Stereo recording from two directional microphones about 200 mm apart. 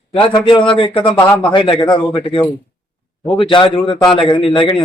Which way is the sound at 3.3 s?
25° left (ahead or behind).